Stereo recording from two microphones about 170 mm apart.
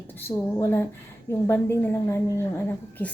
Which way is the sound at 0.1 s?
10° left (ahead or behind).